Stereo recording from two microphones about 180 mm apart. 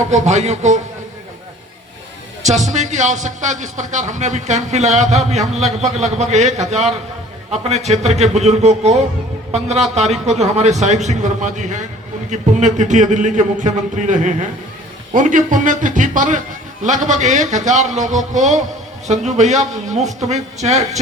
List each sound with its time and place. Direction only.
0.1 s speech: 40° right (ahead or behind)
2.4 s a man's voice: 40° right (ahead or behind)